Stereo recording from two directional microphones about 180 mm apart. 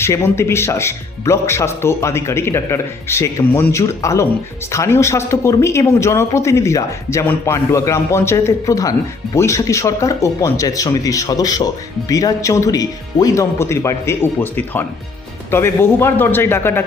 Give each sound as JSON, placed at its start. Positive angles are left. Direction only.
{"t": 0.0, "sound": "speech", "side_deg": 15}